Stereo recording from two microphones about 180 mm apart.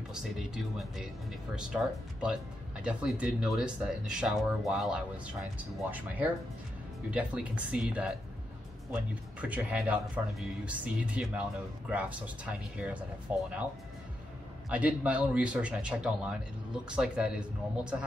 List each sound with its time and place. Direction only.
0.1 s speech: centre (ahead or behind)
14.7 s speech: 10° right (ahead or behind)